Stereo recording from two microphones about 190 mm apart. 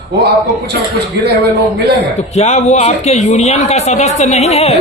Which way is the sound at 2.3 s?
35° left (ahead or behind).